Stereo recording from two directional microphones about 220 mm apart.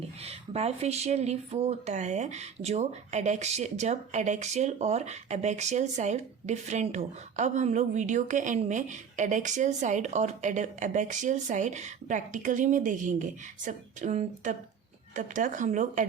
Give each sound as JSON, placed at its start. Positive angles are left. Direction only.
{"t": 0.2, "sound": "speech", "side_deg": -30}